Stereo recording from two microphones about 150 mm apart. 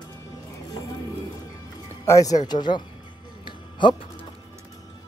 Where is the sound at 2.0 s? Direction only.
25° left (ahead or behind).